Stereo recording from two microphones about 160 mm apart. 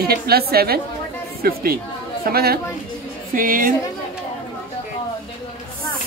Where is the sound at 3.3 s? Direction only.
60° right (ahead or behind).